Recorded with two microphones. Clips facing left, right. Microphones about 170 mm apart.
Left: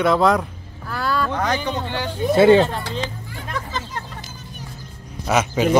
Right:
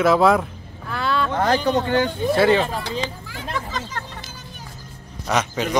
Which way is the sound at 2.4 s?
25° left (ahead or behind).